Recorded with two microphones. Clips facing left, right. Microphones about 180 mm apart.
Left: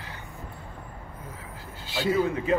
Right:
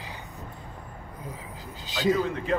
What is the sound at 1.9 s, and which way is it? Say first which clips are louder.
Speech: right 2 dB; 20° right (ahead or behind).